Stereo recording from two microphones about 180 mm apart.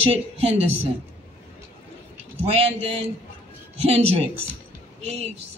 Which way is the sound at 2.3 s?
35° right (ahead or behind).